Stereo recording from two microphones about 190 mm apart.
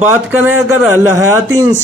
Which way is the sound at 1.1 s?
15° right (ahead or behind).